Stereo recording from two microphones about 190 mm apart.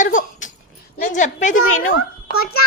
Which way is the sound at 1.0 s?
40° left (ahead or behind).